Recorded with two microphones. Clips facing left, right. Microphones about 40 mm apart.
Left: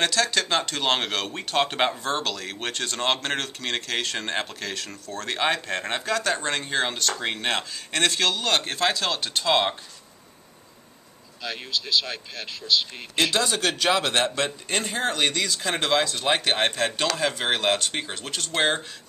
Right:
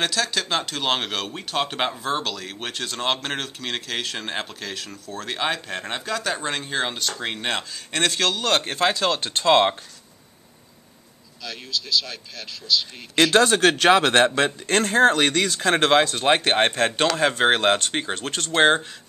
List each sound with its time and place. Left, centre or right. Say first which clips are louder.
0.0 s speech: left 1 dB; centre
8.7 s speech: right 3 dB; centre
9.2 s speech: right 6 dB; right
11.4 s speech: left 1 dB; centre
13.2 s speech: right 7 dB; right
14.7 s speech: right 9 dB; right
18.5 s speech: right 6 dB; right